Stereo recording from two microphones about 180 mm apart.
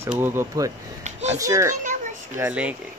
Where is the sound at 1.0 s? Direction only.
40° right (ahead or behind).